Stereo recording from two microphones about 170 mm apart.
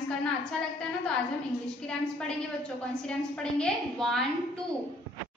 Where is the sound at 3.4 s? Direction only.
5° left (ahead or behind).